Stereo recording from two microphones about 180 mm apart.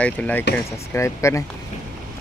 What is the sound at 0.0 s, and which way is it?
Speech, 10° left (ahead or behind).